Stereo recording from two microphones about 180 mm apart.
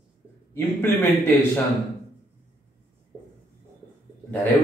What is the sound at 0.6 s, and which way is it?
A man's voice, 10° left (ahead or behind).